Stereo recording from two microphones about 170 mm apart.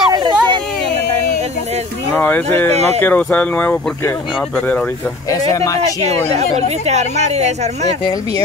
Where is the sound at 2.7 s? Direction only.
40° right (ahead or behind).